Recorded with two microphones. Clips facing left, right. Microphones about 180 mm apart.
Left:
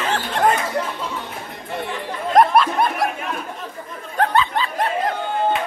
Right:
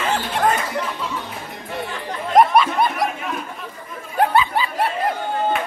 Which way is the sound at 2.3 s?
Centre (ahead or behind).